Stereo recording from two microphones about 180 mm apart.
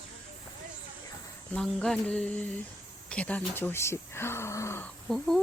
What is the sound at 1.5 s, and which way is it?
Speech, 5° left (ahead or behind).